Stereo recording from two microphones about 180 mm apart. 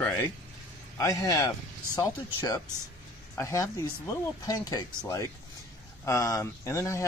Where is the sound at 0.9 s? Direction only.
20° left (ahead or behind).